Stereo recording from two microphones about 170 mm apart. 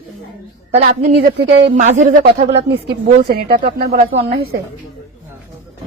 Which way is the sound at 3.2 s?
65° right (ahead or behind).